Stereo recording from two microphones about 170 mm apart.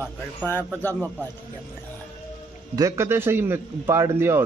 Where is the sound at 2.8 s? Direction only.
15° right (ahead or behind).